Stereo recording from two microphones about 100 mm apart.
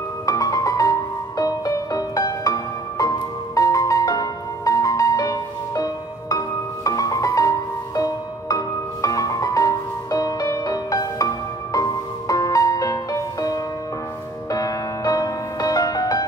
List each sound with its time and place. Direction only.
0.3 s music: 35° left (ahead or behind)